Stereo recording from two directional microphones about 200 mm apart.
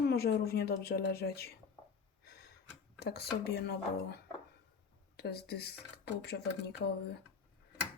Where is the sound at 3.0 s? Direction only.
50° left (ahead or behind).